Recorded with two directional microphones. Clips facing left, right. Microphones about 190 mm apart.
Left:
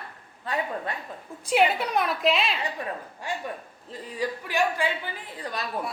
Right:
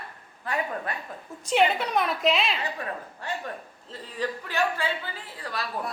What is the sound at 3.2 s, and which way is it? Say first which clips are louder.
A man's voice: left 1 dB; 10° left (ahead or behind).